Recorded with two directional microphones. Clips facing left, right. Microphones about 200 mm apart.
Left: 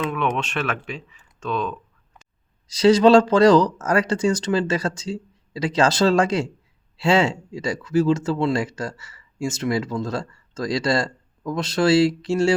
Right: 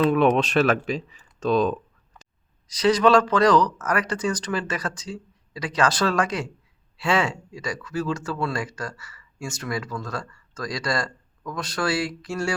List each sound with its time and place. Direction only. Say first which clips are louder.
0.0 s speech: right 6 dB; 35° right (ahead or behind)
2.6 s speech: left 5 dB; 25° left (ahead or behind)